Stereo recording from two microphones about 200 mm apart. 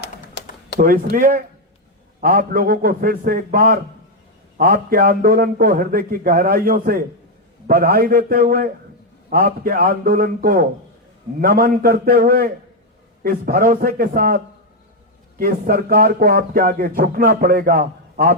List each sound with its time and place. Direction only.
0.0 s typing: 55° left (ahead or behind)
0.8 s speech: 45° right (ahead or behind)